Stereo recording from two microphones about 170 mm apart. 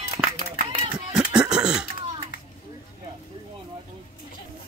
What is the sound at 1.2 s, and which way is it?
Cough, 5° right (ahead or behind).